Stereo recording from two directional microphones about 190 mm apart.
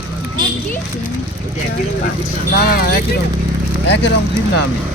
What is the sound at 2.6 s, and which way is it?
Speech, 55° left (ahead or behind).